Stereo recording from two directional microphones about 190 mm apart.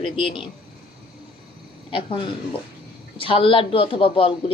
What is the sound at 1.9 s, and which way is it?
A woman's voice, 30° left (ahead or behind).